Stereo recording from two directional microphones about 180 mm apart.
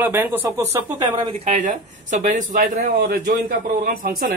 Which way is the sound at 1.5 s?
45° right (ahead or behind).